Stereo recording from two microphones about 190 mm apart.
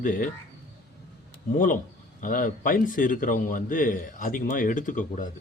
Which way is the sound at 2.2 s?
45° left (ahead or behind).